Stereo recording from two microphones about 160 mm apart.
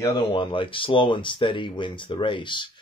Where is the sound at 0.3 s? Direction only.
35° left (ahead or behind).